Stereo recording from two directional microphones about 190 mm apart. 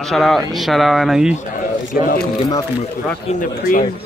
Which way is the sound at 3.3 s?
45° left (ahead or behind).